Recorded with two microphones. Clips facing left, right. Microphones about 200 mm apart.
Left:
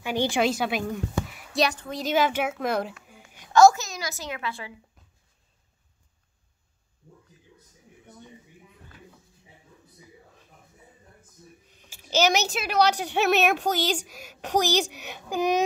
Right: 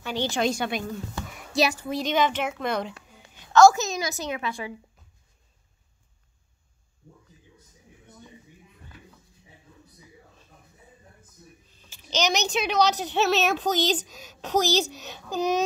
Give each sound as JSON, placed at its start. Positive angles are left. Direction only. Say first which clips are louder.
{"t": 0.0, "sound": "a woman's voice", "louder": "left 2 dB", "side_deg": 15}
{"t": 1.5, "sound": "a woman's voice", "louder": "right 1 dB", "side_deg": -5}
{"t": 3.3, "sound": "a sound", "louder": "even", "side_deg": 10}
{"t": 3.7, "sound": "a woman's voice", "louder": "right 6 dB", "side_deg": -20}
{"t": 11.7, "sound": "a sound", "louder": "left 1 dB", "side_deg": 15}
{"t": 12.1, "sound": "a child's voice", "louder": "left 3 dB", "side_deg": 10}